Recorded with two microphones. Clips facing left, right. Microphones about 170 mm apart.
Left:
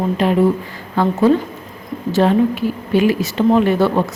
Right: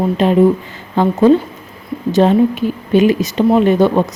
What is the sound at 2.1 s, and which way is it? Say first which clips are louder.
A woman's voice: right 3 dB; 20° right (ahead or behind).